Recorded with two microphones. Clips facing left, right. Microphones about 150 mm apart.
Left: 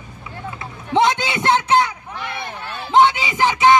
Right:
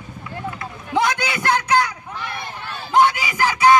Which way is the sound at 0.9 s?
25° left (ahead or behind).